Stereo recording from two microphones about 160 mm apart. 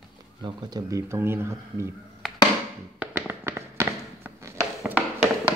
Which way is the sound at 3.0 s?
10° right (ahead or behind).